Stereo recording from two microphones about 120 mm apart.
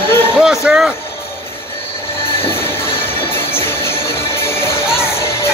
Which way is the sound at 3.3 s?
20° left (ahead or behind).